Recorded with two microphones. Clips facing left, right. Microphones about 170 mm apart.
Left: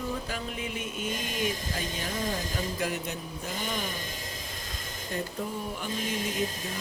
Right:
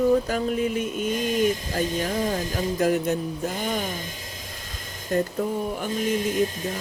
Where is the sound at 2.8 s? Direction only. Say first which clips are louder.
Right 13 dB; 45° right (ahead or behind).